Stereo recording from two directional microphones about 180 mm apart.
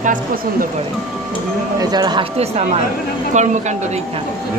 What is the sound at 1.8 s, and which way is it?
Speech, 25° right (ahead or behind).